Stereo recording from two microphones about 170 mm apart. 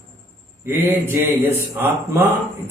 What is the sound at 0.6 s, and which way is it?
A man's voice, 15° right (ahead or behind).